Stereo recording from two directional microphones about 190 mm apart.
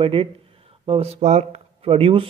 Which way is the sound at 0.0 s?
30° right (ahead or behind).